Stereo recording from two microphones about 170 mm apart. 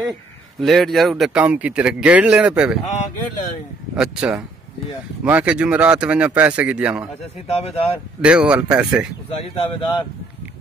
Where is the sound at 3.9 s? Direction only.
5° right (ahead or behind).